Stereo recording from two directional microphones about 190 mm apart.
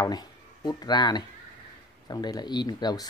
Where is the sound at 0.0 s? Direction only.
20° left (ahead or behind).